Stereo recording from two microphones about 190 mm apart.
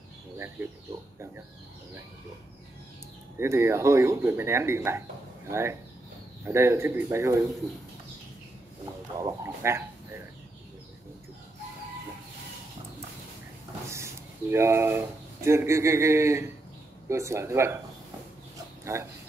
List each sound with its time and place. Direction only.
3.3 s speech: 15° right (ahead or behind)
9.2 s speech: 15° right (ahead or behind)
13.8 s speech: 15° right (ahead or behind)
18.9 s speech: 15° right (ahead or behind)